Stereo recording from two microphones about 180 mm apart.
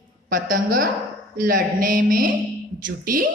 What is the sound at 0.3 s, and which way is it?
A woman's voice, 50° right (ahead or behind).